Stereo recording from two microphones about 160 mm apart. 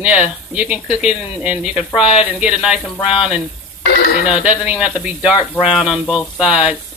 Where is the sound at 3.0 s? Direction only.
30° left (ahead or behind).